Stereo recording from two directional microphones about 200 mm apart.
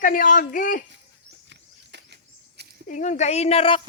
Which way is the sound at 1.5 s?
60° right (ahead or behind).